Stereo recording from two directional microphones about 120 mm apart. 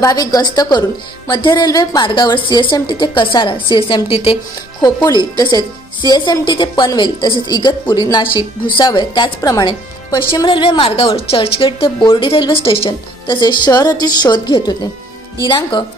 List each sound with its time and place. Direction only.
0.0 s a woman's voice: 30° left (ahead or behind); by 4.4 s 50° left (ahead or behind)
5.3 s a woman's voice: 40° left (ahead or behind)